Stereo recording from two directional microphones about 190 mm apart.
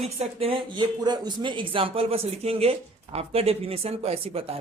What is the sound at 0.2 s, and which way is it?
Speech, 30° right (ahead or behind).